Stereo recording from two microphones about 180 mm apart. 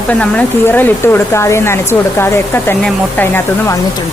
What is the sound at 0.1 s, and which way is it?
Speech, 10° left (ahead or behind).